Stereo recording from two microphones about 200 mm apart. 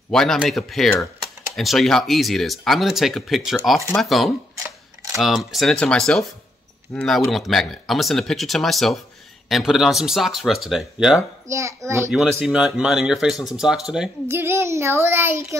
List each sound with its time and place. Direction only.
0.1 s speech: centre (ahead or behind)
11.4 s a child's voice: 15° right (ahead or behind)
12.1 s a child's voice: centre (ahead or behind)